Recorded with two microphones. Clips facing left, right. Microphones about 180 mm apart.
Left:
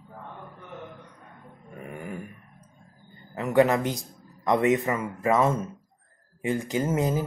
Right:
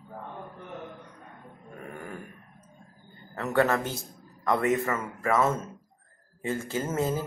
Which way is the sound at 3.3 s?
15° left (ahead or behind).